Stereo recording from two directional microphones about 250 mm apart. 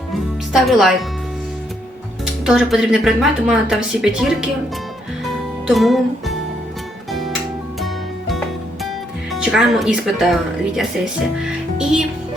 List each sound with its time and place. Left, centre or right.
0.5 s speech: centre
2.4 s speech: centre
5.6 s music: centre
9.3 s speech: centre
11.8 s speech: centre